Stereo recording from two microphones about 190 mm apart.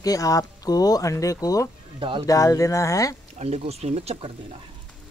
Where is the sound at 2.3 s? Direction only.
15° left (ahead or behind).